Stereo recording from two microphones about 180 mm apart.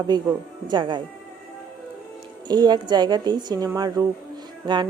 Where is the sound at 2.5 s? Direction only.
20° right (ahead or behind).